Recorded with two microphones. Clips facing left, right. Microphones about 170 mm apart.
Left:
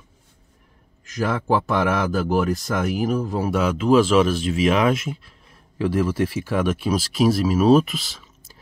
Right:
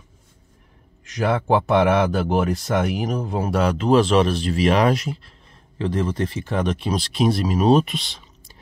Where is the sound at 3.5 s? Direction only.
5° left (ahead or behind).